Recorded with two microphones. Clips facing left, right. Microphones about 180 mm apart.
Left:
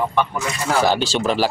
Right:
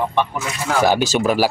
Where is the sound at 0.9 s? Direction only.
10° right (ahead or behind).